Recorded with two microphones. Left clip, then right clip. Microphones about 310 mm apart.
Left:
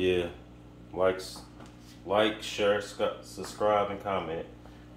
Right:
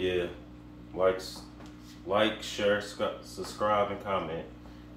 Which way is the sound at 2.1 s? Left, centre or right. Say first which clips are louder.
Left 2 dB; left.